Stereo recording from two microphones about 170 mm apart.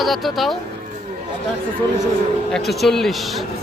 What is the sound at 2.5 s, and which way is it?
Speech, centre (ahead or behind).